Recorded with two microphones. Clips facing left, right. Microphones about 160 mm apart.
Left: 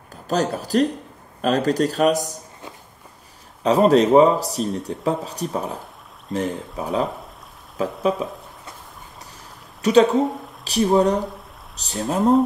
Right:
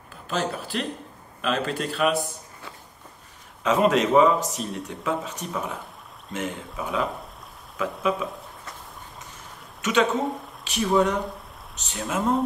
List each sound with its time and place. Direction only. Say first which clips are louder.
0.3 s speech: left 7 dB; 40° left (ahead or behind)
3.6 s speech: left 5 dB; 35° left (ahead or behind)
9.8 s a sound: left 8 dB; 35° left (ahead or behind)
10.6 s speech: left 5 dB; 35° left (ahead or behind)